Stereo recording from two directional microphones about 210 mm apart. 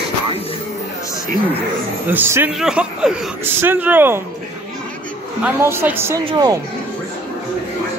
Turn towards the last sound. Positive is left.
turn(degrees=-20)  # may be behind; listen again after turning